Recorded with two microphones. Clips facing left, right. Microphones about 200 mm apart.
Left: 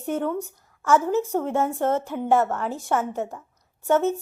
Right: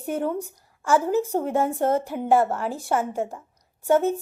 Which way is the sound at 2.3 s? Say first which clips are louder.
Right 1 dB; 30° right (ahead or behind).